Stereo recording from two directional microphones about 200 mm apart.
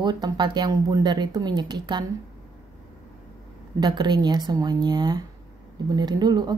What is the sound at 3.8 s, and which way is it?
Speech, 20° right (ahead or behind).